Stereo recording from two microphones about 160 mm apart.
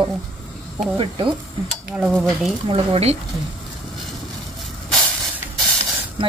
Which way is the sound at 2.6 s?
35° right (ahead or behind).